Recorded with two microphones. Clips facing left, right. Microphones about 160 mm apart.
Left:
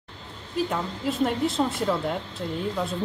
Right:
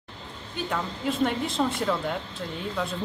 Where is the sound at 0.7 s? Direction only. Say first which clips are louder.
Left 1 dB; centre (ahead or behind).